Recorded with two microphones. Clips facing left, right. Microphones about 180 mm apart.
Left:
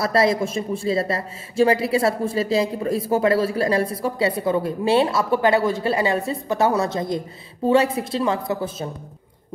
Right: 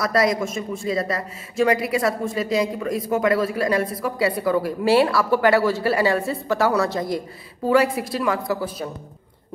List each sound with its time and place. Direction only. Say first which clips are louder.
0.0 s speech: left 1 dB; 30° left (ahead or behind)